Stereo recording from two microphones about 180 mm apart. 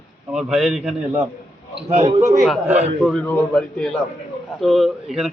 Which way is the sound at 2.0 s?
25° right (ahead or behind).